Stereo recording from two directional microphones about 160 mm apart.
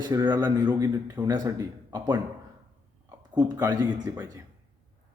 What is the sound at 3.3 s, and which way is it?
A man's voice, 25° right (ahead or behind).